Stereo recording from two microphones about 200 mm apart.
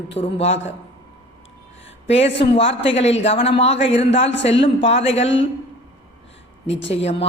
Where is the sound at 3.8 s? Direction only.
65° left (ahead or behind).